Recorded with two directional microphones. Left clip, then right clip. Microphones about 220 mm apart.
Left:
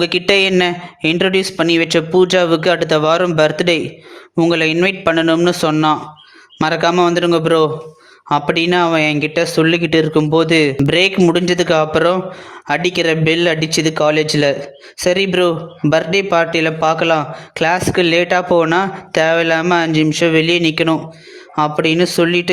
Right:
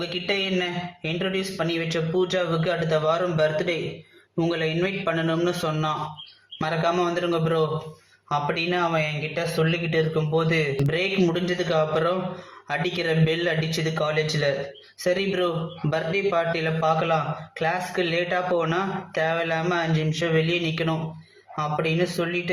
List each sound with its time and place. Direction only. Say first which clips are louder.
0.0 s a man's voice: left 13 dB; 50° left (ahead or behind)